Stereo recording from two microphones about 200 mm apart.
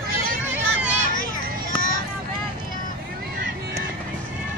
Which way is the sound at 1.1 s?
45° left (ahead or behind).